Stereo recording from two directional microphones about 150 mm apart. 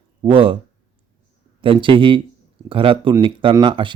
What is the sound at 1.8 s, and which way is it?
A man's voice, 35° right (ahead or behind).